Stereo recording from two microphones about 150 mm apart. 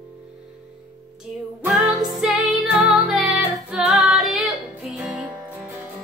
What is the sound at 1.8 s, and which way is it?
Music, centre (ahead or behind).